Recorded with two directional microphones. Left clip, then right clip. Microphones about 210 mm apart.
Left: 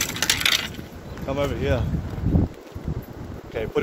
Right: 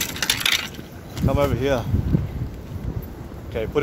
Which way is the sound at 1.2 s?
35° right (ahead or behind).